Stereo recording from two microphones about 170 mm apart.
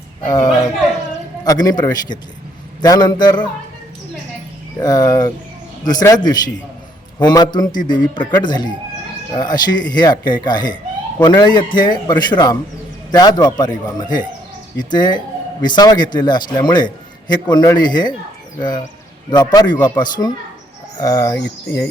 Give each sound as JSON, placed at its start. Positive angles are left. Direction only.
{"t": 0.3, "sound": "speech", "side_deg": 25}
{"t": 4.8, "sound": "speech", "side_deg": 20}